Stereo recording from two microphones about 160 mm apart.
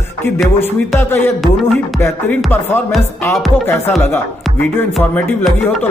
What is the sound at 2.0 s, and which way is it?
Speech, 15° left (ahead or behind).